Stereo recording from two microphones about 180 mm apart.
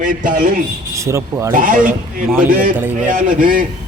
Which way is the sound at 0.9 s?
15° right (ahead or behind).